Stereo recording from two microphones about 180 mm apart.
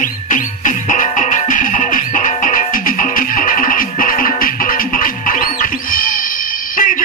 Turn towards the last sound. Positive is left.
turn(degrees=50)  # may be behind; listen again after turning